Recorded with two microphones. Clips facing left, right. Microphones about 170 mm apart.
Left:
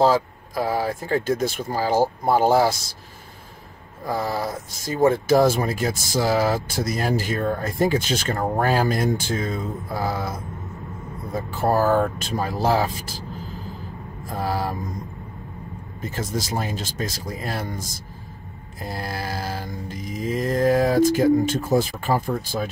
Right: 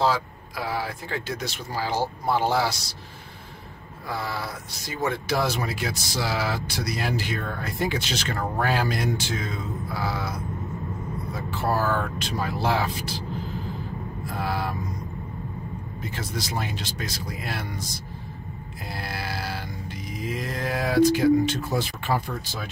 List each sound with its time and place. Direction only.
0.0 s speech: 45° left (ahead or behind)
4.1 s speech: 45° left (ahead or behind)
14.2 s vehicle: 40° left (ahead or behind)
16.0 s speech: 45° left (ahead or behind)
18.9 s a sound: 40° left (ahead or behind)